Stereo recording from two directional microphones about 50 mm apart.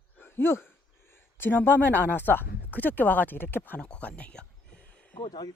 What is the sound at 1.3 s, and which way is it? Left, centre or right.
Speech, left.